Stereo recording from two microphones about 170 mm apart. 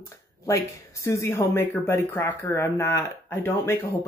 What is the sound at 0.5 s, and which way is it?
Speech, 20° left (ahead or behind).